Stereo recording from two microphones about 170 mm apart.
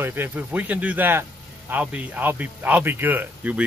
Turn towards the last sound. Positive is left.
turn(degrees=-10)  # may be behind; listen again after turning